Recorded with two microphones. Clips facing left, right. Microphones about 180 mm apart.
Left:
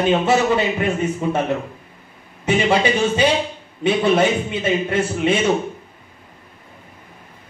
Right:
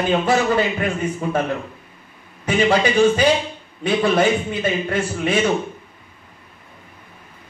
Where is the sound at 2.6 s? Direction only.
25° left (ahead or behind).